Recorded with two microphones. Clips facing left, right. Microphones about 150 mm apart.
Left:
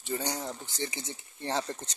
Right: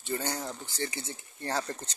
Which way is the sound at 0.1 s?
15° left (ahead or behind).